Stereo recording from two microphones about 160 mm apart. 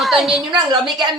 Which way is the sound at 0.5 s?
25° right (ahead or behind).